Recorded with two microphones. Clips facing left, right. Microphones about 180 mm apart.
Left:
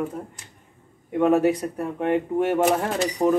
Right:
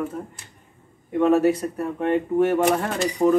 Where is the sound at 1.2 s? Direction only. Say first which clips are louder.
Right 1 dB; 15° left (ahead or behind).